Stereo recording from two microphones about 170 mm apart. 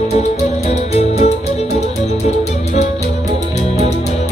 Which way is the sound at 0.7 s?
40° left (ahead or behind).